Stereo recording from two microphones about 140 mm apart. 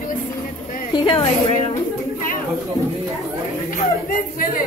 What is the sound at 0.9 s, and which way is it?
Speech, 40° left (ahead or behind).